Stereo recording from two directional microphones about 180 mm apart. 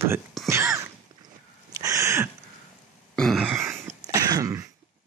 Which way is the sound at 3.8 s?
20° right (ahead or behind).